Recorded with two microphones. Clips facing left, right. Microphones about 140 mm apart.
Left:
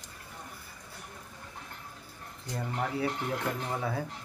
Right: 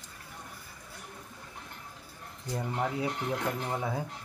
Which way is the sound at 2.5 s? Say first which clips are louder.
Right 1 dB; 15° right (ahead or behind).